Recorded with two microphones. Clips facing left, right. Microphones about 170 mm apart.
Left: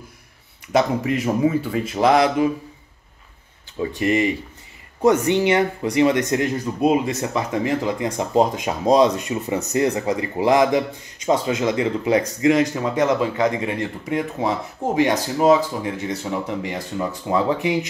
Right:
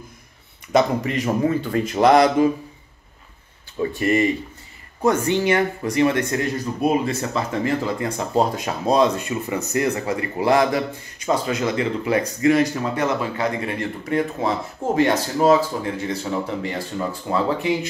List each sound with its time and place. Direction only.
0.7 s a man's voice: 5° left (ahead or behind)
3.8 s speech: 15° left (ahead or behind)